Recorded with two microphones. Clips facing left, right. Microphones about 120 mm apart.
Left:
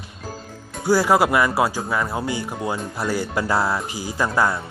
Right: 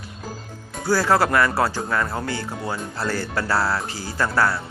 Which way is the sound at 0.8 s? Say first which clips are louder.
Left 2 dB; 15° left (ahead or behind).